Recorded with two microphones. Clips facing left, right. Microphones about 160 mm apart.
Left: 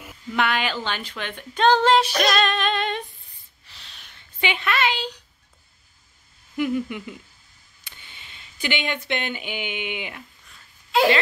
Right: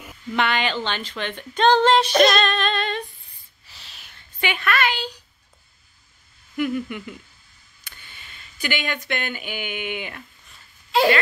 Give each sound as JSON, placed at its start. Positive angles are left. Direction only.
{"t": 0.3, "sound": "speech", "side_deg": 5}
{"t": 3.6, "sound": "snort", "side_deg": -5}
{"t": 4.4, "sound": "a woman's voice", "side_deg": 20}
{"t": 6.5, "sound": "a woman's voice", "side_deg": 20}